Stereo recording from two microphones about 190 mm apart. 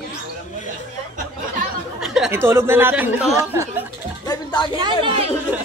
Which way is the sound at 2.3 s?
10° right (ahead or behind).